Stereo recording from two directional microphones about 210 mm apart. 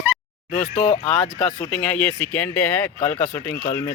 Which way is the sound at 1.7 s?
5° left (ahead or behind).